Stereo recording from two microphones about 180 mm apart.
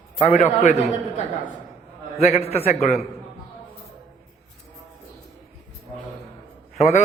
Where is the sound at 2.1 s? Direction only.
35° left (ahead or behind).